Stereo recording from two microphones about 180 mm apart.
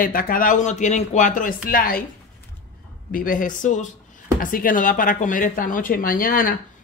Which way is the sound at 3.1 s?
50° left (ahead or behind).